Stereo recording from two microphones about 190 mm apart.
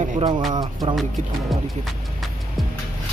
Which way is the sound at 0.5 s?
20° right (ahead or behind).